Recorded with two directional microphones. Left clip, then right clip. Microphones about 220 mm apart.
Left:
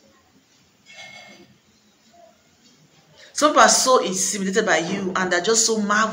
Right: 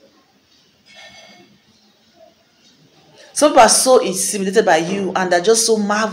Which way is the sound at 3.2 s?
5° left (ahead or behind).